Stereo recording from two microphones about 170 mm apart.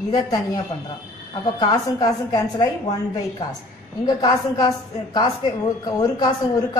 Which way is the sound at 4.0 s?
20° left (ahead or behind).